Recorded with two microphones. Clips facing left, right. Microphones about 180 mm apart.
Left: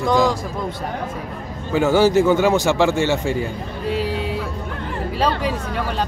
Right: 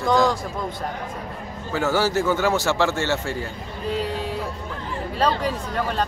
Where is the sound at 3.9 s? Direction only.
5° left (ahead or behind).